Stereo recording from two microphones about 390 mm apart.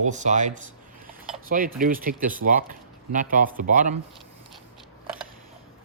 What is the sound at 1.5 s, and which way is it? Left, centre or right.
Speech, right.